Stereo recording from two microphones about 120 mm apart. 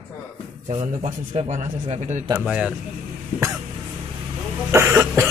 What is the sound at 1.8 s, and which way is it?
Speech, 65° right (ahead or behind).